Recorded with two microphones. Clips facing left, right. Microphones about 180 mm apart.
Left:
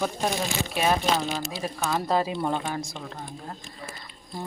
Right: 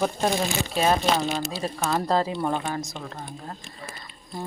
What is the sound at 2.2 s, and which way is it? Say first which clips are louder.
Speech: right 1 dB; 15° left (ahead or behind).